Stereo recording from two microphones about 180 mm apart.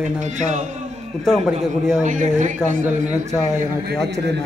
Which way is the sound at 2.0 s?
40° right (ahead or behind).